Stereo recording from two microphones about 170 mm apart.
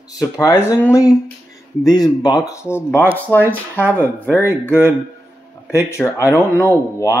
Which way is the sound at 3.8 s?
10° right (ahead or behind).